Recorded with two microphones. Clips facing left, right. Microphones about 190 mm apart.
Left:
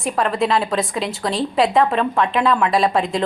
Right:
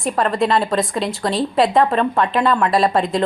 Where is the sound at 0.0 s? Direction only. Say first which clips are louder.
Right 1 dB; centre (ahead or behind).